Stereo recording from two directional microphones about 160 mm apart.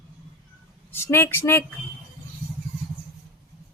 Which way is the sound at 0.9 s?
15° left (ahead or behind).